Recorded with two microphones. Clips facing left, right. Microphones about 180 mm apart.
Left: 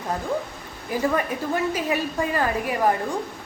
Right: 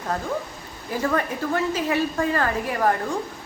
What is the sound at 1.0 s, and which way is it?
A woman's voice, 15° left (ahead or behind).